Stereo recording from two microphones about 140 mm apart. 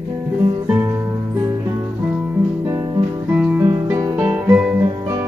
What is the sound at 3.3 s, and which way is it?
Music, 10° right (ahead or behind).